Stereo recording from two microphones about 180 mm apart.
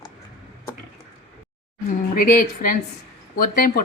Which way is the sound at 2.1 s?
50° left (ahead or behind).